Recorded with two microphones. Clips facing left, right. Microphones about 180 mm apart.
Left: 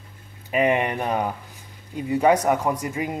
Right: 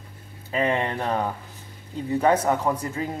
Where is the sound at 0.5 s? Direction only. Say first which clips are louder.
Left 3 dB; 15° left (ahead or behind).